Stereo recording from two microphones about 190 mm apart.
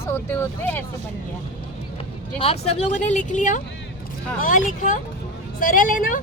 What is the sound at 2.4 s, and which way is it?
Speech, 35° left (ahead or behind).